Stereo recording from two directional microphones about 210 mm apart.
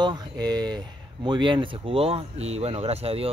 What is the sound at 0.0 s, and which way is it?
Speech, 20° right (ahead or behind).